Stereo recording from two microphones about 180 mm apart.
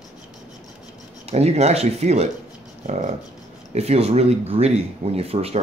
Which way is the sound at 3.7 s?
35° right (ahead or behind).